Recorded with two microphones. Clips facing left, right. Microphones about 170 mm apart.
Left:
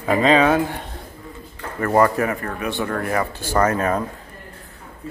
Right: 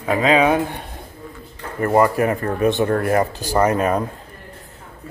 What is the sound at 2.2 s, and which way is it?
Speech, 30° right (ahead or behind).